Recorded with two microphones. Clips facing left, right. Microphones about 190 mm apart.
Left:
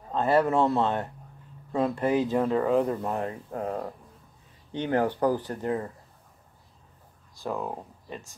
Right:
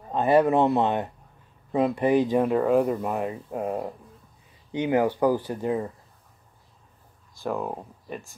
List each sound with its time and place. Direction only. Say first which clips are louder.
0.1 s speech: right 3 dB; 15° right (ahead or behind)
7.4 s speech: right 3 dB; 15° right (ahead or behind)